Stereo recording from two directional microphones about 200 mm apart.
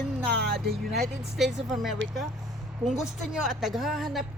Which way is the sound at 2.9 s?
Centre (ahead or behind).